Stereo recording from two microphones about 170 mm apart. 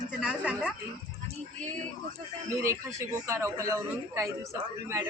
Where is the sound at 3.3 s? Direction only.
15° right (ahead or behind).